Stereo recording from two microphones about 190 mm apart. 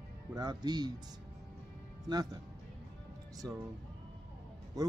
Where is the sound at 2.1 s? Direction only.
20° right (ahead or behind).